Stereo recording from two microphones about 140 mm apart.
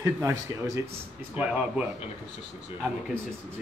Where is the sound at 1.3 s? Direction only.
10° right (ahead or behind).